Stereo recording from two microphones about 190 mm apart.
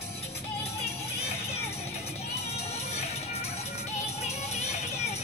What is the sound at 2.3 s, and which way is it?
Music, 35° left (ahead or behind).